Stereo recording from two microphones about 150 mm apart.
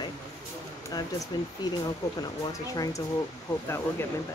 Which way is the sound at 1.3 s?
30° left (ahead or behind).